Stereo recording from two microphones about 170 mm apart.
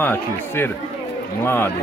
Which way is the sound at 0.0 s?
15° left (ahead or behind).